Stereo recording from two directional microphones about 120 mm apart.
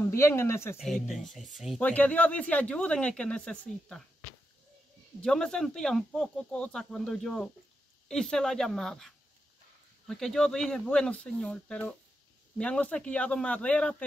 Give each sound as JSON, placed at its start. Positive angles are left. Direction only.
{"t": 0.1, "sound": "speech", "side_deg": 20}
{"t": 0.7, "sound": "speech", "side_deg": 0}
{"t": 1.8, "sound": "speech", "side_deg": 15}
{"t": 5.2, "sound": "speech", "side_deg": 5}